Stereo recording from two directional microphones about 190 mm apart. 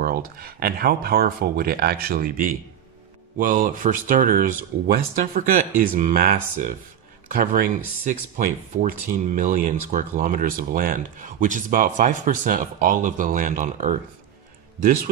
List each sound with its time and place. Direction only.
0.0 s speech: 50° right (ahead or behind)